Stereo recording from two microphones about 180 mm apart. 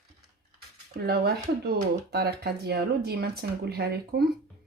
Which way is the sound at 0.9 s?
60° right (ahead or behind).